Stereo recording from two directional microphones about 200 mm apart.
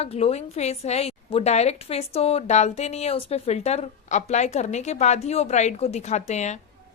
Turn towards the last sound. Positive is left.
turn(degrees=35)  # may be behind; listen again after turning